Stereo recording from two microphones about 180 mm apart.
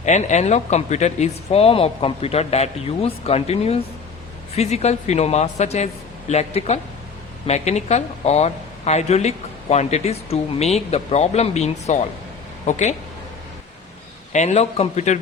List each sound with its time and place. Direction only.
0.0 s speech: 40° left (ahead or behind)
14.3 s speech: 40° left (ahead or behind)